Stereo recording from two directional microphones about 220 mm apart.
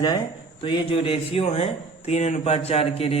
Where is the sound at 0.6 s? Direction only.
25° left (ahead or behind).